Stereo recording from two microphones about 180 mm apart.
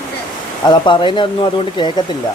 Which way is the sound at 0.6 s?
25° left (ahead or behind).